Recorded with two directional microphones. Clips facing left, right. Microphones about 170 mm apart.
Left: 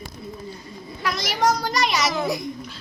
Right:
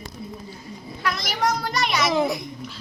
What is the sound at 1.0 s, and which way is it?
A child's voice, centre (ahead or behind).